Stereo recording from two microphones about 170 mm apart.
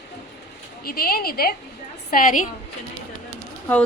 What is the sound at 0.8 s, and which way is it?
A woman's voice, 60° left (ahead or behind).